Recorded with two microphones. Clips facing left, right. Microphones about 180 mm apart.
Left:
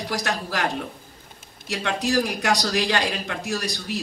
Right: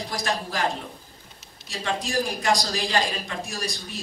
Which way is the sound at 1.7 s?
65° left (ahead or behind).